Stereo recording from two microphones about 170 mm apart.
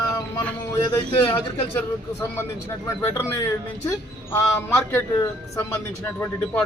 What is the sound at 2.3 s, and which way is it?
A man's voice, 15° left (ahead or behind).